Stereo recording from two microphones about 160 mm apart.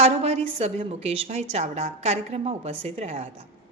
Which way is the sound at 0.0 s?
40° right (ahead or behind).